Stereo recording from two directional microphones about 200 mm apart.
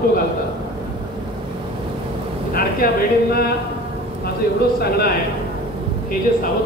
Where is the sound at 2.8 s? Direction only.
45° left (ahead or behind).